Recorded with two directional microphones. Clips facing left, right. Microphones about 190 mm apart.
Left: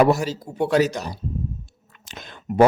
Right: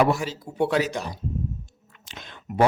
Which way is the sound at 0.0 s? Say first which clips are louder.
Left 4 dB; 40° left (ahead or behind).